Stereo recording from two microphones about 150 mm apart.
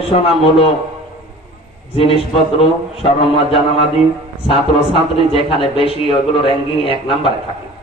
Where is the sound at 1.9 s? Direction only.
40° left (ahead or behind).